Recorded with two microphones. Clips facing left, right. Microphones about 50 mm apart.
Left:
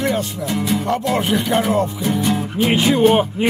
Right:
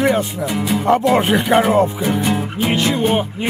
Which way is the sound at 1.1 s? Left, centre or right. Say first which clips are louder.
Right 4 dB; right.